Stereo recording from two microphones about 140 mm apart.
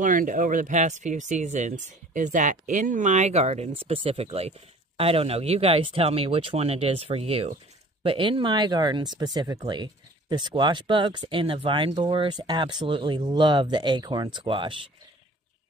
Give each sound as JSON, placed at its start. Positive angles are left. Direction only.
{"t": 0.0, "sound": "speech", "side_deg": -75}